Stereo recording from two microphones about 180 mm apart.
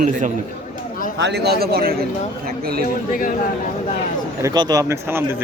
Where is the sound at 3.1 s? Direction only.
50° left (ahead or behind).